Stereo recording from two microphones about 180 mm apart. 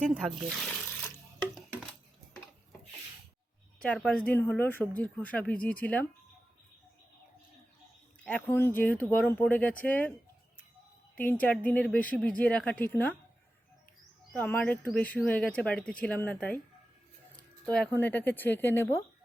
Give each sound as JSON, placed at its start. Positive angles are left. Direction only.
{"t": 0.1, "sound": "speech", "side_deg": -5}
{"t": 0.9, "sound": "water", "side_deg": 10}
{"t": 3.8, "sound": "speech", "side_deg": 5}
{"t": 8.2, "sound": "speech", "side_deg": 10}
{"t": 11.1, "sound": "a woman's voice", "side_deg": 10}
{"t": 14.3, "sound": "speech", "side_deg": 10}
{"t": 17.3, "sound": "a sound", "side_deg": 5}
{"t": 18.0, "sound": "speech", "side_deg": 10}